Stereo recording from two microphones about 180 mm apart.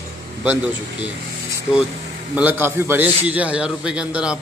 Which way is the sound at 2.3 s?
10° right (ahead or behind).